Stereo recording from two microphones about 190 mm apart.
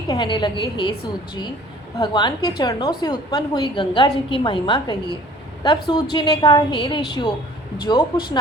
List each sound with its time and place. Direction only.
0.1 s a woman's voice: 25° left (ahead or behind)
2.0 s a woman's voice: 25° left (ahead or behind)